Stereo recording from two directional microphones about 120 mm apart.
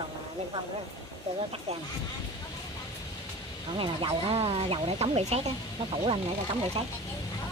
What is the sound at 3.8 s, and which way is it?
Speech, 45° right (ahead or behind).